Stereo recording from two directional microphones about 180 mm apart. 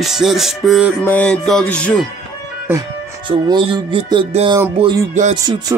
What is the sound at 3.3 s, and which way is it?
Music, 30° right (ahead or behind).